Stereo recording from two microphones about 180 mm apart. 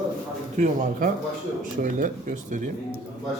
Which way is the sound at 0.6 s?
50° right (ahead or behind).